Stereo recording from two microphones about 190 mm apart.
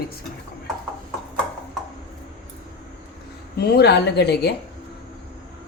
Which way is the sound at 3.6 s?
60° left (ahead or behind).